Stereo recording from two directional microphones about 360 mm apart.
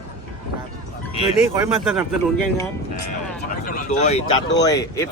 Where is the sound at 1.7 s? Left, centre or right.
Centre.